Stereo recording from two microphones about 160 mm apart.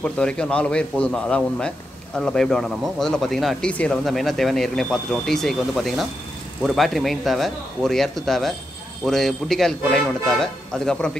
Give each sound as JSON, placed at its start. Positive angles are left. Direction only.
{"t": 0.0, "sound": "a man's voice", "side_deg": 5}